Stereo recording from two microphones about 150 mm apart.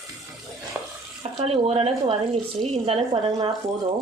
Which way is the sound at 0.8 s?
10° right (ahead or behind).